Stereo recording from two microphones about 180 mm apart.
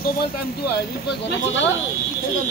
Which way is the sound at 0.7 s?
65° left (ahead or behind).